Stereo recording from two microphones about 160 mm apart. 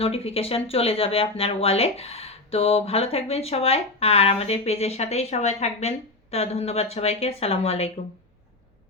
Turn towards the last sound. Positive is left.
turn(degrees=40)  # may be behind; listen again after turning